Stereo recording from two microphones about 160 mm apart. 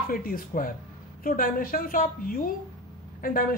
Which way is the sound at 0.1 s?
60° left (ahead or behind).